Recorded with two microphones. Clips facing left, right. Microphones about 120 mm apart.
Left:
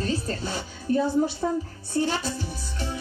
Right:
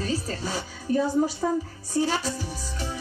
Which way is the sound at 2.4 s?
40° right (ahead or behind).